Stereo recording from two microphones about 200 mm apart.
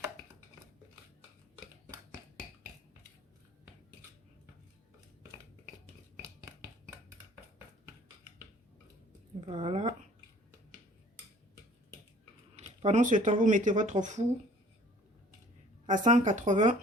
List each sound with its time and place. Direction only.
9.5 s speech: 30° right (ahead or behind)
12.5 s speech: 35° right (ahead or behind)
15.9 s speech: 40° right (ahead or behind)